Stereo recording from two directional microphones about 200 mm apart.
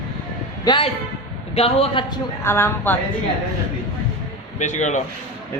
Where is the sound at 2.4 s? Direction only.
10° left (ahead or behind).